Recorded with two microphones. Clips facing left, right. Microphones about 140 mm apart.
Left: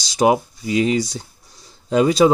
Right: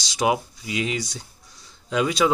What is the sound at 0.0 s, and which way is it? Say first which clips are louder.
Speech: left 6 dB; 35° left (ahead or behind).